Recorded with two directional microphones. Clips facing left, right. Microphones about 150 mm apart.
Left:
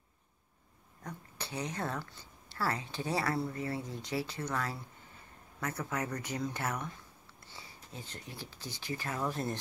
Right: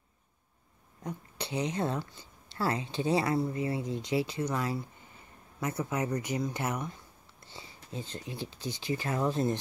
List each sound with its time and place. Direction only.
1.0 s speech: 20° right (ahead or behind)